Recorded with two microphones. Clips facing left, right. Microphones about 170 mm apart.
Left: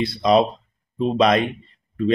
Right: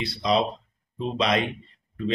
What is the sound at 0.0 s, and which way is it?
Speech, 50° left (ahead or behind).